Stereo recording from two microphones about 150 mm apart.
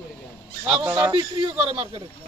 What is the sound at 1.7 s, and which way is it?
Speech, 40° right (ahead or behind).